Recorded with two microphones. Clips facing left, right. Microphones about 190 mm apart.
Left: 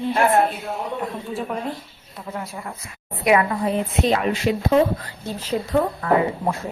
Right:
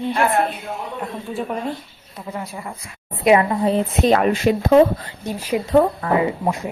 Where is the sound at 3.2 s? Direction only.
25° right (ahead or behind).